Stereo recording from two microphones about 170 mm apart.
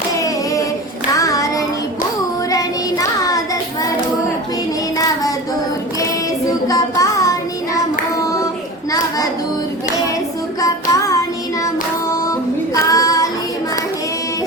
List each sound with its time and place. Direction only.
0.1 s hands: 20° left (ahead or behind)
1.1 s child singing: 20° left (ahead or behind)
6.5 s child singing: 20° left (ahead or behind)
8.9 s children playing: 20° left (ahead or behind)
10.6 s child singing: 20° left (ahead or behind)
12.7 s female singing: 20° left (ahead or behind)